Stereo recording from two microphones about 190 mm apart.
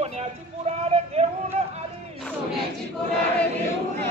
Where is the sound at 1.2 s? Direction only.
35° right (ahead or behind).